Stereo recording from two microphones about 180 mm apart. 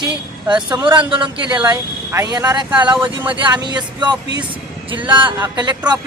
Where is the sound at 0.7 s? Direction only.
25° right (ahead or behind).